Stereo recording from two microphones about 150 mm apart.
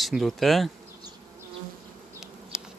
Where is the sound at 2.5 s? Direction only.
5° right (ahead or behind).